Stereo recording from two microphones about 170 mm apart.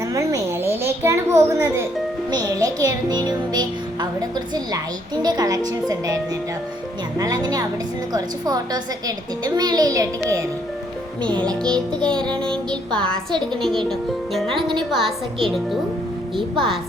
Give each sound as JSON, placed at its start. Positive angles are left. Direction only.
{"t": 0.0, "sound": "a sound", "side_deg": -20}
{"t": 2.3, "sound": "a woman's voice", "side_deg": -20}
{"t": 7.2, "sound": "a woman's voice", "side_deg": -20}
{"t": 11.3, "sound": "music", "side_deg": 5}